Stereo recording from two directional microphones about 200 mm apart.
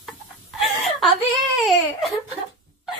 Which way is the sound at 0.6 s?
Centre (ahead or behind).